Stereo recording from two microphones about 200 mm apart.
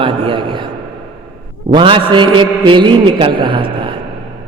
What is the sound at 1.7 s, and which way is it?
A man's voice, 25° right (ahead or behind).